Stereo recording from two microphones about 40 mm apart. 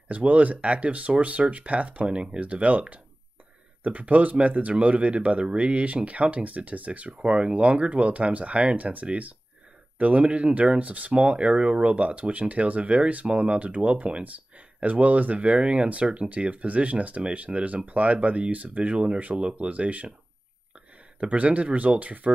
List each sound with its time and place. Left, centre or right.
0.1 s speech: right
21.2 s speech: right